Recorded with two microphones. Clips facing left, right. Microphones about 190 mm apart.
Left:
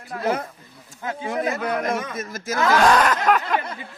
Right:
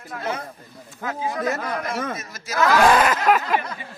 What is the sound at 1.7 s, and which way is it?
Speech, 50° left (ahead or behind).